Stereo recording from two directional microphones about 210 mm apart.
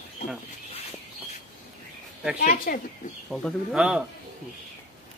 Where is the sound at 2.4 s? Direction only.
40° left (ahead or behind).